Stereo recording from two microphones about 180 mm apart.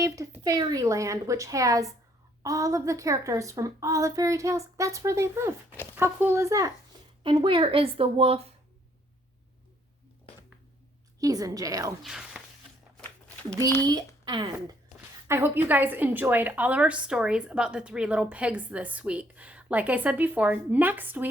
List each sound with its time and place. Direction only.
0.4 s a woman's voice: 20° right (ahead or behind)
7.2 s a woman's voice: 30° right (ahead or behind)
11.2 s a woman's voice: 20° right (ahead or behind)
12.0 s speech: centre (ahead or behind)
13.0 s a sound: 5° left (ahead or behind)
14.3 s a woman's voice: 20° right (ahead or behind)